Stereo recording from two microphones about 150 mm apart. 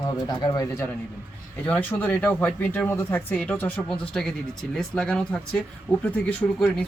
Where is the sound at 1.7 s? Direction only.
10° left (ahead or behind).